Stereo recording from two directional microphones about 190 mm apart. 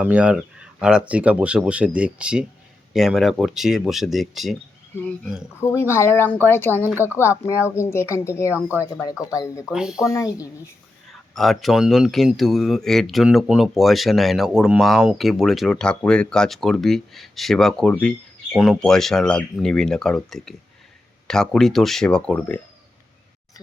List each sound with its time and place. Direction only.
0.0 s speech: 5° right (ahead or behind)
4.9 s speech: 10° left (ahead or behind)
9.7 s speech: 5° right (ahead or behind)
10.1 s speech: 15° left (ahead or behind)
11.3 s speech: centre (ahead or behind)